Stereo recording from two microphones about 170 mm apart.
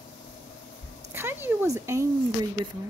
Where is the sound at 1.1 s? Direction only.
10° right (ahead or behind).